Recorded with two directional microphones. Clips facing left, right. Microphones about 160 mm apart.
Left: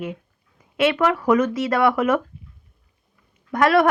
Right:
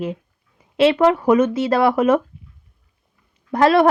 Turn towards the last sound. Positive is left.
turn(degrees=-25)  # may be behind; listen again after turning